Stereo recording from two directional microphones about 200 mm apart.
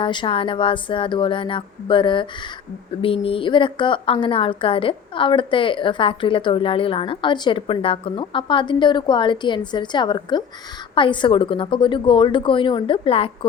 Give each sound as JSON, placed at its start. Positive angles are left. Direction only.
{"t": 0.0, "sound": "a woman's voice", "side_deg": 25}